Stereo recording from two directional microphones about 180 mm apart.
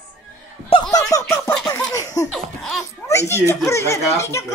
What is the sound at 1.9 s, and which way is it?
Laughter, 20° left (ahead or behind).